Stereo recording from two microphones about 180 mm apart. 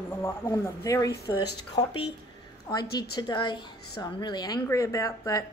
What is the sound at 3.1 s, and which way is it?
A woman's voice, 25° left (ahead or behind).